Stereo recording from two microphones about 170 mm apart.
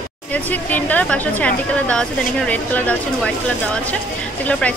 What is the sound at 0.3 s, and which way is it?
Speech, 10° left (ahead or behind).